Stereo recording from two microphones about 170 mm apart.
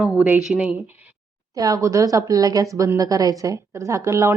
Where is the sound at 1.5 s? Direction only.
20° right (ahead or behind).